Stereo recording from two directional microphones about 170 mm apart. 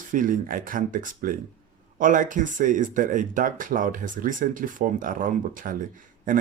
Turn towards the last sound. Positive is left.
turn(degrees=-50)  # may be behind; listen again after turning